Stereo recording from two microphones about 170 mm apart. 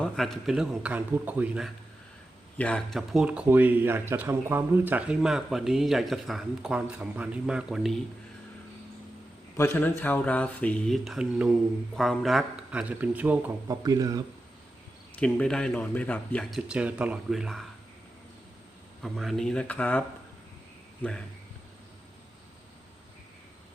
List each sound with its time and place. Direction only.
0.0 s speech: centre (ahead or behind)
2.6 s speech: 5° left (ahead or behind)
9.6 s speech: 10° left (ahead or behind); by 13.7 s 10° right (ahead or behind)
13.8 s speech: 20° right (ahead or behind)
15.1 s speech: 5° left (ahead or behind)
19.0 s speech: centre (ahead or behind)